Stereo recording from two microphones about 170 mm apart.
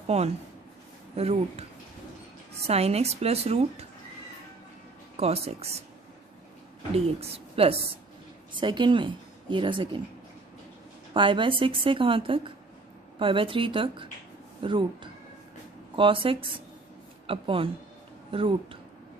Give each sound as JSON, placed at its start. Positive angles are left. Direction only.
{"t": 0.0, "sound": "a woman's voice", "side_deg": -40}
{"t": 5.1, "sound": "a woman's voice", "side_deg": -35}
{"t": 6.9, "sound": "a woman's voice", "side_deg": -35}
{"t": 11.1, "sound": "a woman's voice", "side_deg": -30}